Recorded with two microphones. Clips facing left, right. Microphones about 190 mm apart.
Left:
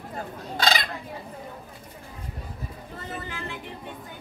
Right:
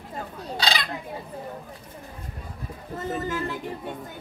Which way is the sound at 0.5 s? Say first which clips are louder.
Left 2 dB; 50° left (ahead or behind).